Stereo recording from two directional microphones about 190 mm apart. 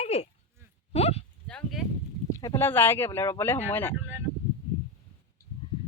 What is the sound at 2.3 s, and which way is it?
Speech, 15° left (ahead or behind).